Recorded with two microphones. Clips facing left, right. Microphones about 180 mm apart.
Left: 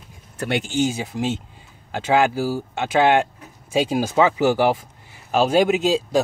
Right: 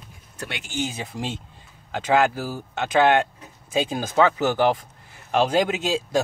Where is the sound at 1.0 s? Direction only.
5° left (ahead or behind).